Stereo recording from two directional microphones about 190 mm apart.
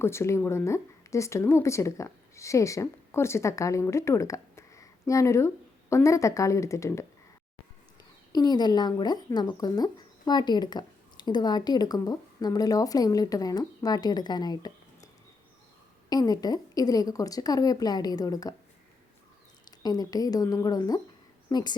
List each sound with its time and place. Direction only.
0.0 s speech: 15° left (ahead or behind)
8.3 s speech: 20° left (ahead or behind)
19.8 s speech: 20° left (ahead or behind)